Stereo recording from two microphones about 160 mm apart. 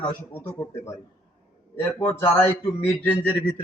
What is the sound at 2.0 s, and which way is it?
Speech, 15° left (ahead or behind).